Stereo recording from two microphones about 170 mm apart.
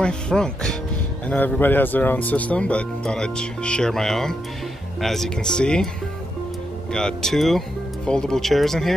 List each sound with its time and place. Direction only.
0.0 s speech: 5° left (ahead or behind)
6.9 s speech: 5° left (ahead or behind)